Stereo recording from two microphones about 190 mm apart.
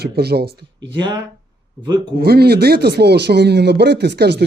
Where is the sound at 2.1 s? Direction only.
55° right (ahead or behind).